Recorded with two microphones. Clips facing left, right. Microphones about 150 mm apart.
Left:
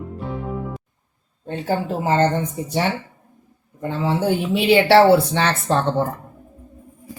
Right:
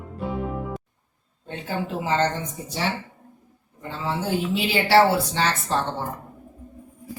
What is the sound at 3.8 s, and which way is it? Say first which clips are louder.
Speech: left 7 dB; 60° left (ahead or behind).